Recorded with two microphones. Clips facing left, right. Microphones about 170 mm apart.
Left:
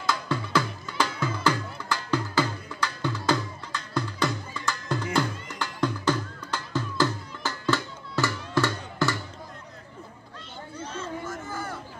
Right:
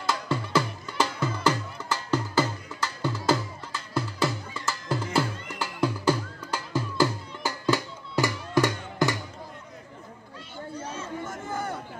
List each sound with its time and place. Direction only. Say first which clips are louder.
0.0 s music: even; 5° right (ahead or behind)
10.8 s chatter: left 2 dB; 10° right (ahead or behind)
11.2 s a sound: right 2 dB; 25° right (ahead or behind)